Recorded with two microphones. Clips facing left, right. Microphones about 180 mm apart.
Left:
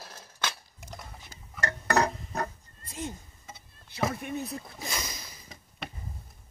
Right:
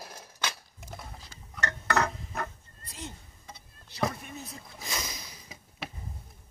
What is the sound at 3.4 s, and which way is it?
Vehicle, centre (ahead or behind).